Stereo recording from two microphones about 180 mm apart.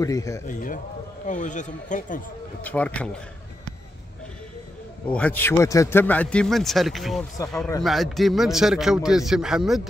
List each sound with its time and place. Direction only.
0.0 s a man's voice: 20° left (ahead or behind)
0.5 s a man's voice: 50° left (ahead or behind)
2.6 s a man's voice: 10° left (ahead or behind)
5.1 s a man's voice: 10° left (ahead or behind)